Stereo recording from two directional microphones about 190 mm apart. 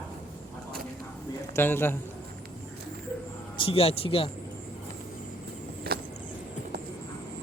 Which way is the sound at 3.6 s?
30° left (ahead or behind).